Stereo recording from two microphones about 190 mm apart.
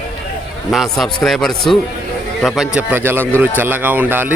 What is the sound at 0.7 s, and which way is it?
A man's voice, centre (ahead or behind).